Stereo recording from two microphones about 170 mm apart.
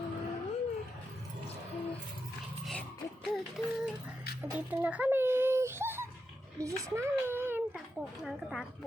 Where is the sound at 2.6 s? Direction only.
Centre (ahead or behind).